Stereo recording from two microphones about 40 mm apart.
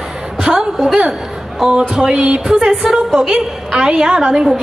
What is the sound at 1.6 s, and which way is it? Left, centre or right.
Speech, right.